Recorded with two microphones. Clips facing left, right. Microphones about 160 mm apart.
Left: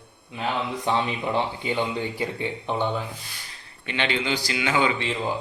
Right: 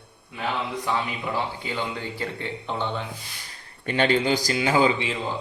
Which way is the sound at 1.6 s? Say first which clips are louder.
Left 4 dB; 20° left (ahead or behind).